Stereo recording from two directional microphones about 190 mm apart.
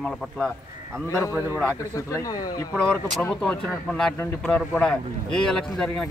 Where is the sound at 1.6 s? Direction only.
15° left (ahead or behind).